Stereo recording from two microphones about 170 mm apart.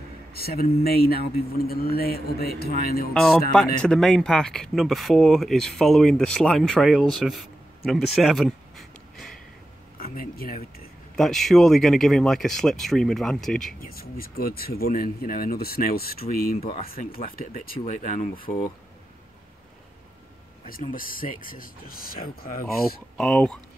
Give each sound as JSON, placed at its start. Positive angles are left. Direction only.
{"t": 0.3, "sound": "speech", "side_deg": 65}
{"t": 3.1, "sound": "speech", "side_deg": 5}
{"t": 9.9, "sound": "speech", "side_deg": 60}
{"t": 11.1, "sound": "speech", "side_deg": 0}
{"t": 13.7, "sound": "speech", "side_deg": 60}
{"t": 20.9, "sound": "speech", "side_deg": 55}
{"t": 23.1, "sound": "speech", "side_deg": 5}